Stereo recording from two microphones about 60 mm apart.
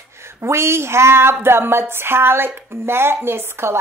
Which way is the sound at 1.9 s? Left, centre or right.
Right.